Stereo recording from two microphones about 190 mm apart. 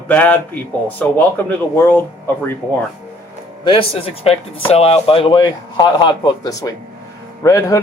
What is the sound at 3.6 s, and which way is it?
Speech, 30° left (ahead or behind).